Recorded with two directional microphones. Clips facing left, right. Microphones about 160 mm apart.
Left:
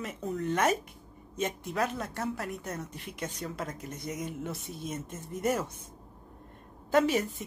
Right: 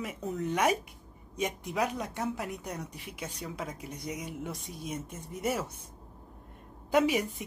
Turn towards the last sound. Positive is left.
turn(degrees=-10)  # may be behind; listen again after turning